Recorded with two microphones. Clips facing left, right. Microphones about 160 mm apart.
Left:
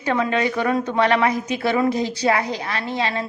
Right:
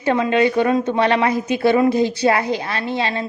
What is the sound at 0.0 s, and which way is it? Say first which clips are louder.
A woman's voice: right 4 dB; 30° right (ahead or behind).